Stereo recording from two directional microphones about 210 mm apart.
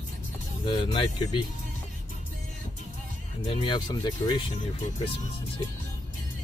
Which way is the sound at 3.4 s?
25° left (ahead or behind).